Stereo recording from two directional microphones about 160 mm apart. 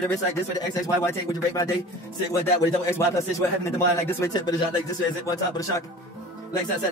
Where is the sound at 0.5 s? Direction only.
25° left (ahead or behind).